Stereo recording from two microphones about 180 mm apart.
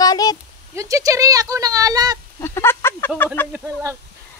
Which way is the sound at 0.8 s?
20° right (ahead or behind).